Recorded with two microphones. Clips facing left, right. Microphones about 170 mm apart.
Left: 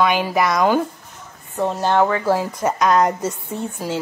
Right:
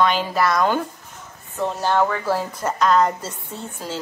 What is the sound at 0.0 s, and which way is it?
Speech, 10° left (ahead or behind).